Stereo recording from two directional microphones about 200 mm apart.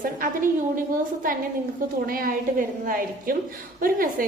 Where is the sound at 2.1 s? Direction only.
45° right (ahead or behind).